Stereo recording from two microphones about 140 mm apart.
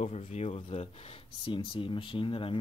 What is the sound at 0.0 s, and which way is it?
Speech, 55° left (ahead or behind).